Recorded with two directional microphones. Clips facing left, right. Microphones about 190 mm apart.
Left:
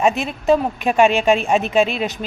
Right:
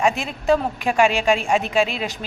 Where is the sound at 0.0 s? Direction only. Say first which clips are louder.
Left 3 dB; 20° left (ahead or behind).